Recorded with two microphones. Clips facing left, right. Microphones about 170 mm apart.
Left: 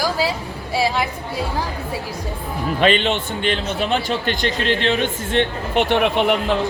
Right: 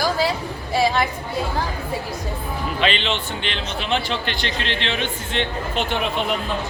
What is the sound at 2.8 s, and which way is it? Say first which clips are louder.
A man's voice: left 6 dB; 45° left (ahead or behind).